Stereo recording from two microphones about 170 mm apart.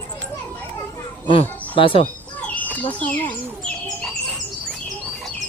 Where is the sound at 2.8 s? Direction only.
10° left (ahead or behind).